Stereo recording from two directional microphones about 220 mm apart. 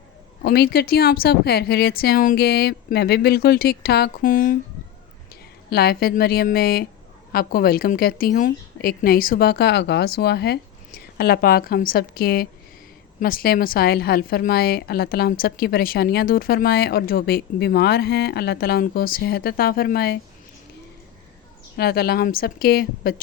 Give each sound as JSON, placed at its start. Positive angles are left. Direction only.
{"t": 0.4, "sound": "speech", "side_deg": 45}
{"t": 5.7, "sound": "speech", "side_deg": 45}
{"t": 21.8, "sound": "speech", "side_deg": 45}